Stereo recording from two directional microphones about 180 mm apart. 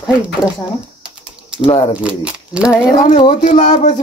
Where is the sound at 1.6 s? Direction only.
35° left (ahead or behind).